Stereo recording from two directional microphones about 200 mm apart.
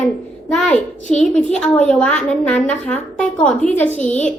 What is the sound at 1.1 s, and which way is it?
Speech, 35° left (ahead or behind).